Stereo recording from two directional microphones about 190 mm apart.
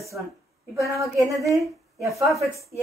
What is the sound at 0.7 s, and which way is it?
Speech, 15° right (ahead or behind).